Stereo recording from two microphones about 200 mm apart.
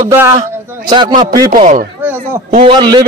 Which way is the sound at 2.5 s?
25° right (ahead or behind).